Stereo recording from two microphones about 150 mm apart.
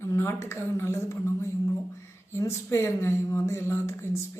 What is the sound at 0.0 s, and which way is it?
Speech, 20° left (ahead or behind).